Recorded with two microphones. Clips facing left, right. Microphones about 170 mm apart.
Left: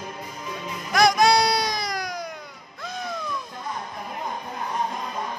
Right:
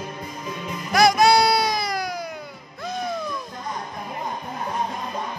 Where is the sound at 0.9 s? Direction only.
5° right (ahead or behind).